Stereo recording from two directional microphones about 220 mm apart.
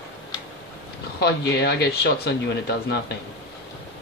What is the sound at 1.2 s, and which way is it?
Speech, 50° left (ahead or behind).